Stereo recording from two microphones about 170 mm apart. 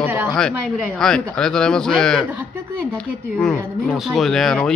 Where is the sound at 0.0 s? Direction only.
10° right (ahead or behind).